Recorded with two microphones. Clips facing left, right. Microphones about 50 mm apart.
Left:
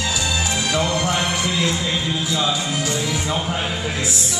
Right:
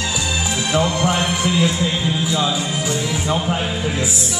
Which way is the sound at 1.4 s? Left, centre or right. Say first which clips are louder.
Right 3 dB; centre.